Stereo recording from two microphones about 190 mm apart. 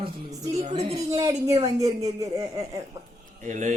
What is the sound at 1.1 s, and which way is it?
Speech, 20° right (ahead or behind).